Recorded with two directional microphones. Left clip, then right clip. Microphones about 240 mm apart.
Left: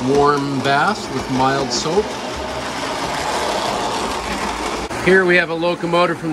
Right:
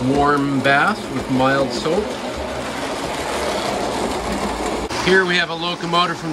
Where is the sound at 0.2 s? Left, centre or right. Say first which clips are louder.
Right 2 dB; centre.